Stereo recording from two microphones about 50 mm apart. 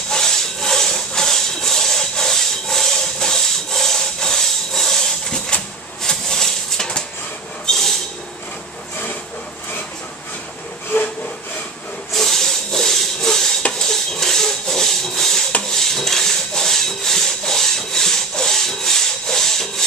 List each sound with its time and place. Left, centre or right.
0.1 s a sound: centre
12.1 s wood: centre
13.6 s dishes: left
13.8 s rub: centre
15.8 s sawing: centre